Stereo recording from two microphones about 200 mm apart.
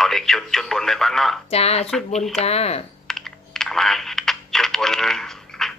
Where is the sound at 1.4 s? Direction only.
30° left (ahead or behind).